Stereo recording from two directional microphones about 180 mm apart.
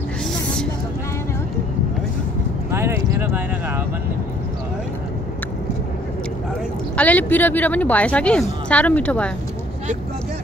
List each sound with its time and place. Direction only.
2.7 s speech: 15° right (ahead or behind)
7.0 s speech: 10° left (ahead or behind)